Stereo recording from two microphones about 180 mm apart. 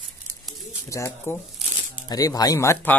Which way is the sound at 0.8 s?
15° left (ahead or behind).